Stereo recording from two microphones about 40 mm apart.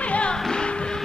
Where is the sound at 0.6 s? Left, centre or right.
Left.